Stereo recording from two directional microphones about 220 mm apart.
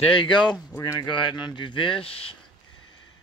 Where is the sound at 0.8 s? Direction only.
20° left (ahead or behind).